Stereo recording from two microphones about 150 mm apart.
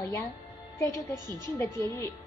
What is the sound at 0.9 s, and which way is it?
Speech, 25° right (ahead or behind).